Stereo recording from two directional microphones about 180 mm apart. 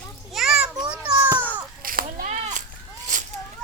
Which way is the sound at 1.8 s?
50° right (ahead or behind).